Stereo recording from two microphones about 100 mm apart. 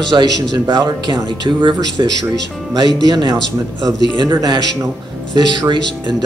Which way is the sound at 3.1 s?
45° right (ahead or behind).